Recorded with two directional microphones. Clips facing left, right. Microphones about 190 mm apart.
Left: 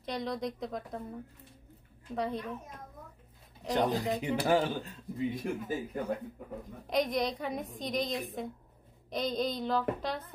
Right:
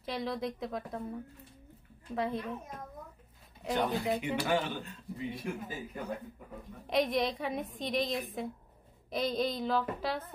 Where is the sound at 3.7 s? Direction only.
35° left (ahead or behind).